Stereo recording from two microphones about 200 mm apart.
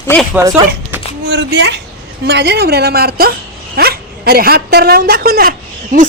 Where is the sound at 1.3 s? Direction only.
60° right (ahead or behind).